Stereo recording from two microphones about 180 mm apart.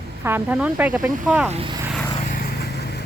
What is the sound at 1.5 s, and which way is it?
Speech, 30° right (ahead or behind).